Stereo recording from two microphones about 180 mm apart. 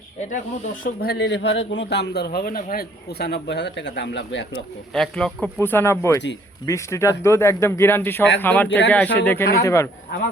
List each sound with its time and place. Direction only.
0.2 s speech: 45° left (ahead or behind); by 4.6 s 80° left
4.9 s speech: 5° left (ahead or behind)